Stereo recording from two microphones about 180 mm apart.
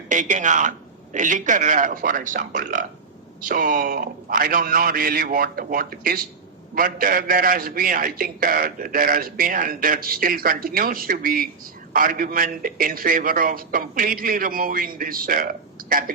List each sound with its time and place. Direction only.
0.1 s a man's voice: 45° right (ahead or behind)